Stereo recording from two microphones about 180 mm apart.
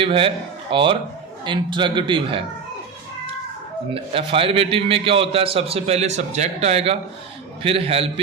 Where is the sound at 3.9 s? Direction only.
30° right (ahead or behind).